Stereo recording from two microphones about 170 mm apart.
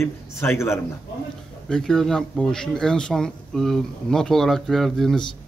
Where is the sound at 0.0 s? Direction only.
15° left (ahead or behind).